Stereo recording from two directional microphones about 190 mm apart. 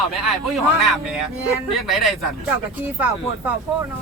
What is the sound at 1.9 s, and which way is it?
Speech, centre (ahead or behind).